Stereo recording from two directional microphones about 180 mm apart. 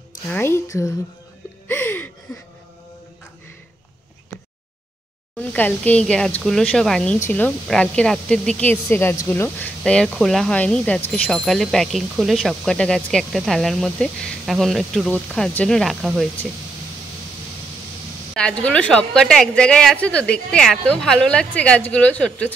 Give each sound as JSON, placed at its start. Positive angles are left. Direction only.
{"t": 0.3, "sound": "speech", "side_deg": 15}
{"t": 1.7, "sound": "a sound", "side_deg": 10}
{"t": 5.4, "sound": "speech", "side_deg": 10}
{"t": 18.3, "sound": "speech", "side_deg": 5}